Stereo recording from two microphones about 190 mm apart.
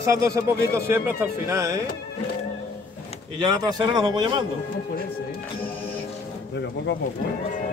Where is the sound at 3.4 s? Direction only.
20° right (ahead or behind).